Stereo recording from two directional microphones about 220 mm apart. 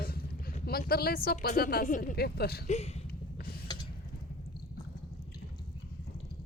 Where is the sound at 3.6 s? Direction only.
20° left (ahead or behind).